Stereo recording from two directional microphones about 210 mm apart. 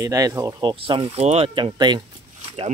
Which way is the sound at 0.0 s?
15° right (ahead or behind).